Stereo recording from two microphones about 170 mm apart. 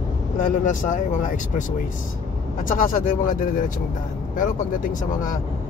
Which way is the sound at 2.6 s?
50° left (ahead or behind).